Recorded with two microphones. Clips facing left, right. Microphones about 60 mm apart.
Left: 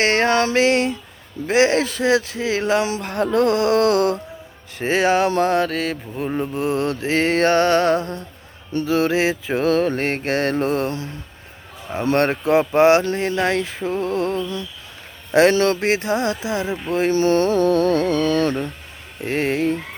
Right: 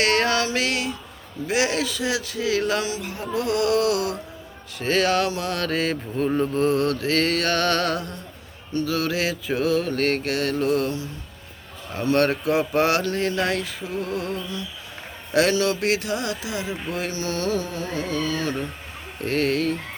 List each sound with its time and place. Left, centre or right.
0.0 s speech: left
3.0 s music: left
3.5 s speech: left
4.8 s speech: left
5.6 s mantra: centre
6.1 s mantra: centre
6.7 s speech: left
9.6 s music: left
9.9 s speech: left
17.7 s music: left
19.2 s speech: left